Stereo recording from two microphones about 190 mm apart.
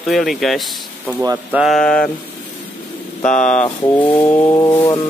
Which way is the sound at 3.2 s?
5° left (ahead or behind).